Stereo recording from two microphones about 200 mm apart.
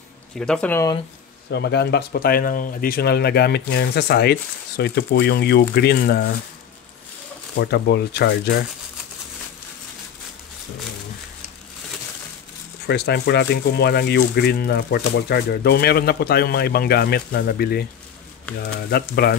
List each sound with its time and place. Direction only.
0.4 s speech: 5° left (ahead or behind)
1.5 s speech: 55° left (ahead or behind)
7.5 s speech: 55° left (ahead or behind)
12.8 s speech: 55° left (ahead or behind)